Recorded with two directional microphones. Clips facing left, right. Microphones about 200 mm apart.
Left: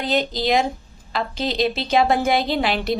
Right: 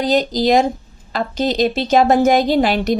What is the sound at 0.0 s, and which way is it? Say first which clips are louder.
A woman's voice: right 6 dB; 40° right (ahead or behind).